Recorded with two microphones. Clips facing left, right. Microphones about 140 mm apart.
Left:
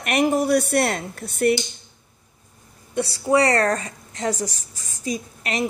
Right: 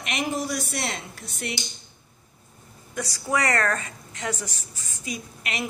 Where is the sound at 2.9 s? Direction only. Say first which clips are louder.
Left 8 dB; 30° left (ahead or behind).